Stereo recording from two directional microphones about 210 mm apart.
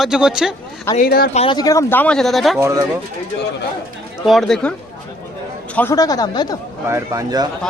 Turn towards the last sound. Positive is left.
turn(degrees=-15)  # may be behind; listen again after turning